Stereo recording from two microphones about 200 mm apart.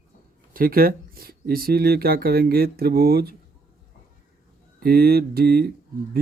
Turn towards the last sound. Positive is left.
turn(degrees=-50)  # may be behind; listen again after turning